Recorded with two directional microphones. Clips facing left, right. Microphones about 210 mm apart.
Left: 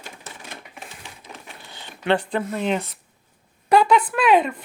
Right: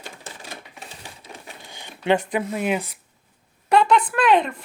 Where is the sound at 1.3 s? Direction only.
15° right (ahead or behind).